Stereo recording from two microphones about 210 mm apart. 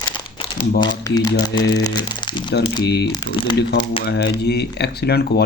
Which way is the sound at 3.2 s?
25° left (ahead or behind).